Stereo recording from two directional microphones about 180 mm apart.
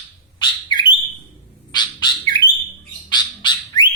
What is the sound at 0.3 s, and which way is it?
Bird, 25° left (ahead or behind).